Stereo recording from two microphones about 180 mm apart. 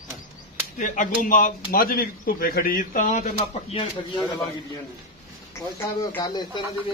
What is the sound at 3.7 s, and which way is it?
Speech, 30° left (ahead or behind).